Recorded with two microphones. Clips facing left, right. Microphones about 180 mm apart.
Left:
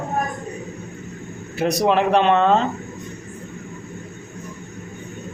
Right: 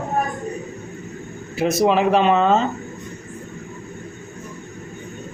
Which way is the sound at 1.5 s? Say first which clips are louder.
Right 1 dB; centre (ahead or behind).